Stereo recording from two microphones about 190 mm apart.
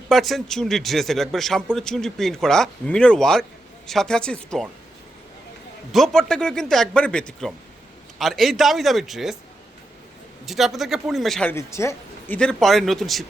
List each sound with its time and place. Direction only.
0.1 s speech: centre (ahead or behind)
5.9 s speech: centre (ahead or behind)
10.4 s speech: centre (ahead or behind)